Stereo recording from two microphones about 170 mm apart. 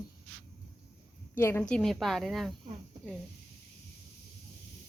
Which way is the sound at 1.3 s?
15° left (ahead or behind).